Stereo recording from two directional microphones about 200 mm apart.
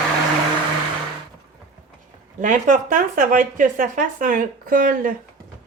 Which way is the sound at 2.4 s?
40° right (ahead or behind).